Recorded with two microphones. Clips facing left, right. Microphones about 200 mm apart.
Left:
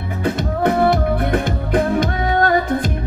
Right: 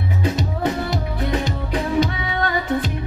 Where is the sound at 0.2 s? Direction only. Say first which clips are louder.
Left 5 dB; 55° left (ahead or behind).